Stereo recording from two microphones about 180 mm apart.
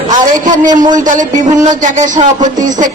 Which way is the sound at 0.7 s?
45° right (ahead or behind).